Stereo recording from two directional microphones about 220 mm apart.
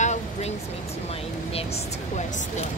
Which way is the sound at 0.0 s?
30° left (ahead or behind).